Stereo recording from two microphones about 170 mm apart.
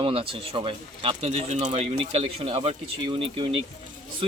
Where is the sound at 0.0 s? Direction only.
30° right (ahead or behind).